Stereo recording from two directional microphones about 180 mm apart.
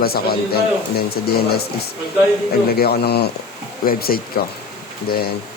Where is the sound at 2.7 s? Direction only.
60° left (ahead or behind).